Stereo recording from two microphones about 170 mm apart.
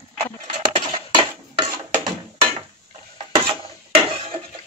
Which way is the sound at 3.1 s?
30° right (ahead or behind).